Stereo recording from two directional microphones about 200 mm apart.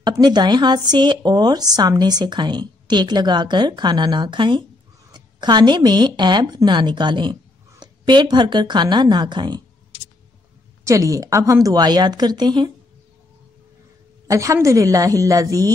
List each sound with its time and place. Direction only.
0.0 s speech: 20° right (ahead or behind)
10.8 s speech: 15° right (ahead or behind)
14.2 s a woman's voice: 15° right (ahead or behind)